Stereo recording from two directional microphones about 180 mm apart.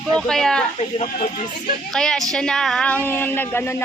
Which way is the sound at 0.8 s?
35° left (ahead or behind).